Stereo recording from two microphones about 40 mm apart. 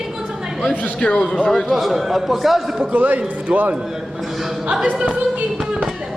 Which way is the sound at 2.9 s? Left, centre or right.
Right.